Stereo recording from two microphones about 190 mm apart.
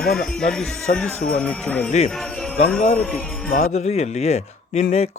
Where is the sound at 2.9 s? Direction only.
5° left (ahead or behind).